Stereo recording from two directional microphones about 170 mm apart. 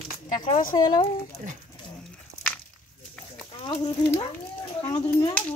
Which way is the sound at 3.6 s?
30° left (ahead or behind).